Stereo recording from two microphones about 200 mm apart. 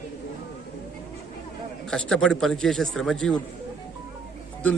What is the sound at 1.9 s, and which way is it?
A man's voice, 5° left (ahead or behind).